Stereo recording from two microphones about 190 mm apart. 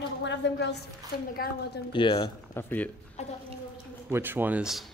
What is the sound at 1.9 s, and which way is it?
Speech, 25° left (ahead or behind).